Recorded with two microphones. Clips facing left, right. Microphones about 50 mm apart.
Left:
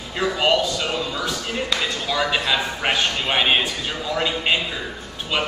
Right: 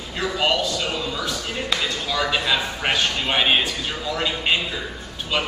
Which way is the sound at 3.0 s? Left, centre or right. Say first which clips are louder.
Left 1 dB; left.